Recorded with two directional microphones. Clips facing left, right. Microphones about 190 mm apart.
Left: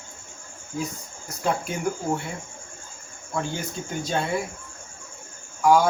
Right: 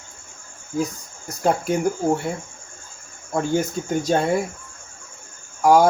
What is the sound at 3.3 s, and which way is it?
Speech, 45° right (ahead or behind).